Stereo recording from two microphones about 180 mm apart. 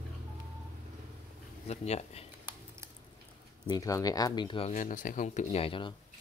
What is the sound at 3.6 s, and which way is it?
Speech, 20° left (ahead or behind).